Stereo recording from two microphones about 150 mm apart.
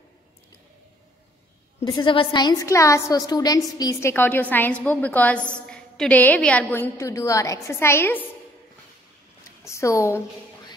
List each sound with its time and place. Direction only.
1.9 s a woman's voice: 30° left (ahead or behind); by 8.3 s 15° left (ahead or behind)
9.7 s a woman's voice: 20° left (ahead or behind)